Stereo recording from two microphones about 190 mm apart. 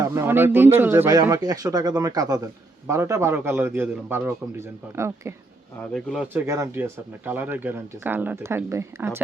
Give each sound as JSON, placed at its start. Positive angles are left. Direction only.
{"t": 0.0, "sound": "speech", "side_deg": -15}
{"t": 5.9, "sound": "speech", "side_deg": 0}
{"t": 6.2, "sound": "speech", "side_deg": -15}